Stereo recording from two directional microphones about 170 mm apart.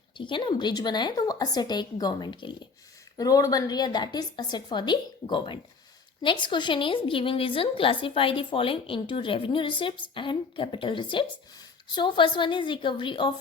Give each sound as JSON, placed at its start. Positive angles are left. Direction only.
{"t": 0.2, "sound": "a woman's voice", "side_deg": 30}